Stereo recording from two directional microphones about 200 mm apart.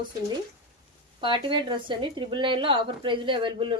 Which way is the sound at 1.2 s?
25° right (ahead or behind).